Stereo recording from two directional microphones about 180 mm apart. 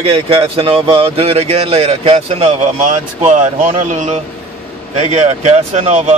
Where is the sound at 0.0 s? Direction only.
30° right (ahead or behind).